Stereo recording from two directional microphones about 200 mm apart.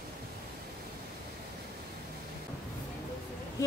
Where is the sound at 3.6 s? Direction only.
15° left (ahead or behind).